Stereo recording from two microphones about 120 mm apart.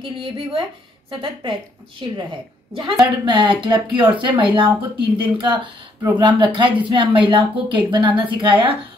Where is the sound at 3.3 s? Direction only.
40° right (ahead or behind).